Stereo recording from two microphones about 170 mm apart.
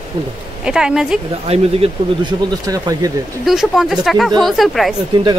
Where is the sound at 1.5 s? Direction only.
35° right (ahead or behind).